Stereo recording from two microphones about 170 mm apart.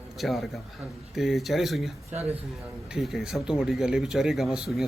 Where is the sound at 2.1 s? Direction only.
40° right (ahead or behind).